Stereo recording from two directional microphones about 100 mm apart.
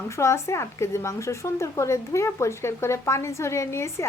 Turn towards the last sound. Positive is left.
turn(degrees=25)  # may be behind; listen again after turning